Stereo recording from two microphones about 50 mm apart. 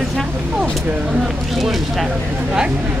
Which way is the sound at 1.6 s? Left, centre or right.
Centre.